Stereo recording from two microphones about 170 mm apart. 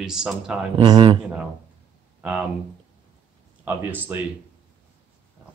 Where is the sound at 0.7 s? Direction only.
30° right (ahead or behind).